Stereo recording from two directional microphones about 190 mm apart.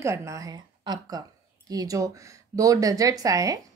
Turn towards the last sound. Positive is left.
turn(degrees=-15)  # may be behind; listen again after turning